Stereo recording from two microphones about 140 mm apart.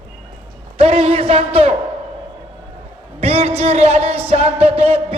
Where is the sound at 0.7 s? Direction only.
45° right (ahead or behind).